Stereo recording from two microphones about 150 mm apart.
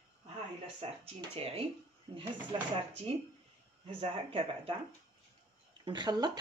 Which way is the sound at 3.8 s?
35° right (ahead or behind).